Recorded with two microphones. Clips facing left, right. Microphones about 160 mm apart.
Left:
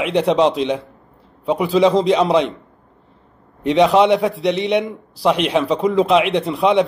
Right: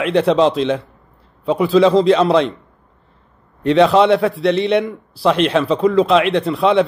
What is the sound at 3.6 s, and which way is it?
A man's voice, 15° left (ahead or behind).